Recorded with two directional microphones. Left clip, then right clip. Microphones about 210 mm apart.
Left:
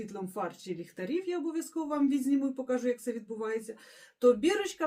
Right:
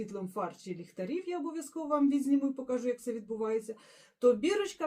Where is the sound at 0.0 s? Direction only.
20° left (ahead or behind).